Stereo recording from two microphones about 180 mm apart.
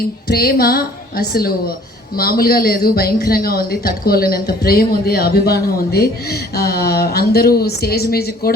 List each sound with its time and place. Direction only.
0.3 s speech: 60° left (ahead or behind)